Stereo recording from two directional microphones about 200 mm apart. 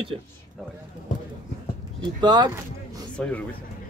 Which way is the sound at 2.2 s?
20° right (ahead or behind).